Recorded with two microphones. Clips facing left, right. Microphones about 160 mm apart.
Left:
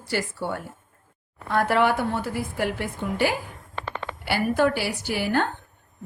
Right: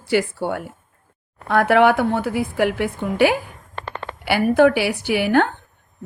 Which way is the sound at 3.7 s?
45° right (ahead or behind).